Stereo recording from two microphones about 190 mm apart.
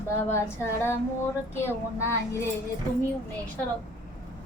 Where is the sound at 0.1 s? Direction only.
15° left (ahead or behind).